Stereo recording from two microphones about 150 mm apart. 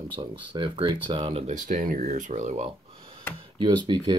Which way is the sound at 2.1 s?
50° right (ahead or behind).